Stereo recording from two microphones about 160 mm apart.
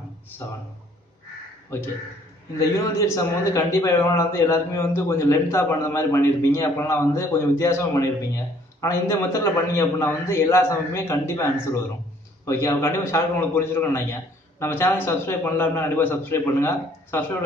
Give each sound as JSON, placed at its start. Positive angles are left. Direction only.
{"t": 1.7, "sound": "a man's voice", "side_deg": 15}
{"t": 3.5, "sound": "a man's voice", "side_deg": 20}